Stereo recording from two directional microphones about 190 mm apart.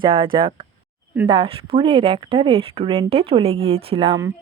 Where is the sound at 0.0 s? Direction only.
25° right (ahead or behind).